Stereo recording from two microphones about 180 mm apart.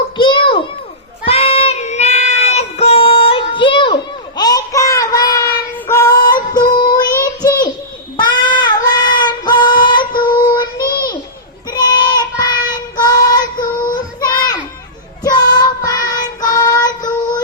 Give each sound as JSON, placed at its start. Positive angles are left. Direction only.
{"t": 0.2, "sound": "a sound", "side_deg": 25}
{"t": 1.3, "sound": "child singing", "side_deg": 35}
{"t": 15.2, "sound": "child singing", "side_deg": 20}